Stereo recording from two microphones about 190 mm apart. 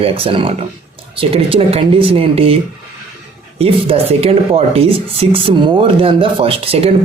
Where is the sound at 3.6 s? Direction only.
30° right (ahead or behind).